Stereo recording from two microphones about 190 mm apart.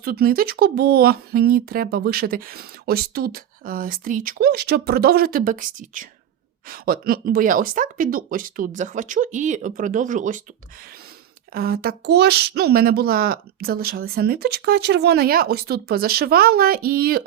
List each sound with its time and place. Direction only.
0.0 s speech: 50° right (ahead or behind)
11.5 s speech: 55° right (ahead or behind)